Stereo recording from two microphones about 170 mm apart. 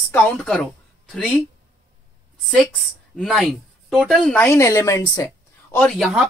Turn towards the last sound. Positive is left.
turn(degrees=0)  # may be behind; listen again after turning